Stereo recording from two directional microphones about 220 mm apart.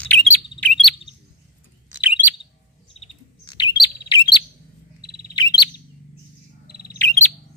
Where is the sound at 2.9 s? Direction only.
20° left (ahead or behind).